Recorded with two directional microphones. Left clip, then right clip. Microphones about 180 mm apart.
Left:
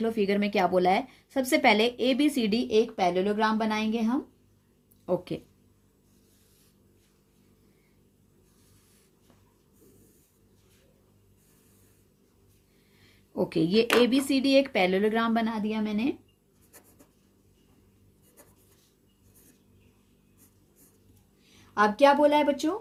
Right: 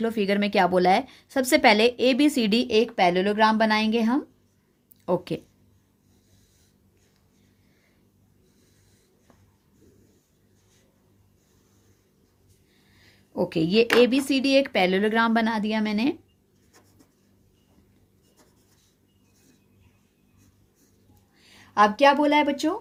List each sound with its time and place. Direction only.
0.0 s speech: 30° right (ahead or behind)
13.3 s speech: 20° right (ahead or behind); by 16.1 s 55° right (ahead or behind)
21.5 s speech: 35° right (ahead or behind)